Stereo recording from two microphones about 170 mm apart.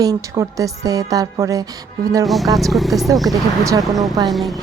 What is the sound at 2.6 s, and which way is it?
Speech, centre (ahead or behind).